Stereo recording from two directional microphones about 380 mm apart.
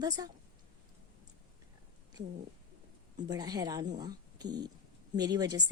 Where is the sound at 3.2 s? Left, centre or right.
Centre.